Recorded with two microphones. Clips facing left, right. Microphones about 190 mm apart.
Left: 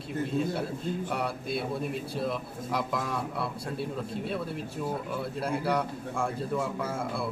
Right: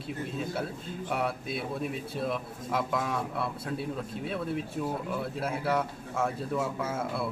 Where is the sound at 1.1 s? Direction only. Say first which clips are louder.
Even; centre (ahead or behind).